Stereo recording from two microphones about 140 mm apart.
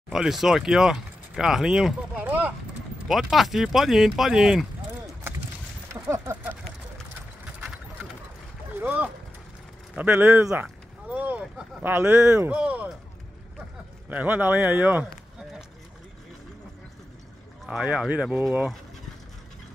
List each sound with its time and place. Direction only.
0.1 s speech: centre (ahead or behind)
3.1 s speech: centre (ahead or behind)
5.9 s speech: 20° right (ahead or behind)
7.6 s clip-clop: 5° right (ahead or behind)
8.8 s speech: 10° right (ahead or behind)
14.0 s speech: 10° right (ahead or behind)
17.6 s speech: 5° right (ahead or behind)